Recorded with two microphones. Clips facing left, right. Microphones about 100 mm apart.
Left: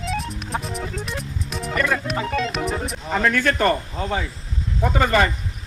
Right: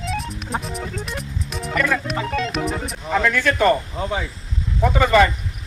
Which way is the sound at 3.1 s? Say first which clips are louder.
Right 1 dB; 35° left (ahead or behind).